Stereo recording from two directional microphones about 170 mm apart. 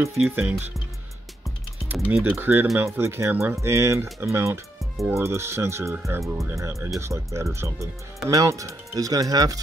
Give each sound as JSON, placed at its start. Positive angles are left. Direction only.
{"t": 0.0, "sound": "speech", "side_deg": -15}
{"t": 1.9, "sound": "speech", "side_deg": -10}